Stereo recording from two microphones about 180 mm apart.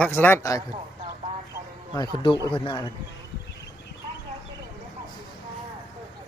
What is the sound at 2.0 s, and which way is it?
Speech, 25° left (ahead or behind).